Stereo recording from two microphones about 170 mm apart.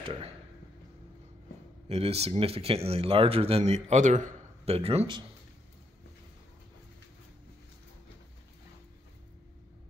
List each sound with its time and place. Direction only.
0.0 s speech: 35° right (ahead or behind)
1.9 s speech: 40° right (ahead or behind)